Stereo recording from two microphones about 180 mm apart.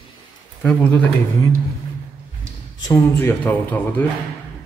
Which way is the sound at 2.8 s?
15° left (ahead or behind).